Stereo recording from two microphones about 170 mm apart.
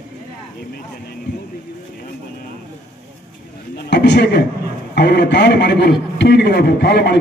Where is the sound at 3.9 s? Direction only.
85° left.